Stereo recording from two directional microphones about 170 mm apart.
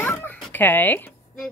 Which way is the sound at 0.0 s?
10° left (ahead or behind).